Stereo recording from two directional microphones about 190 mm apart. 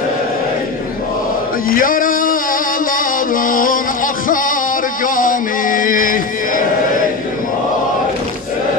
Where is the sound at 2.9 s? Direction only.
45° left (ahead or behind).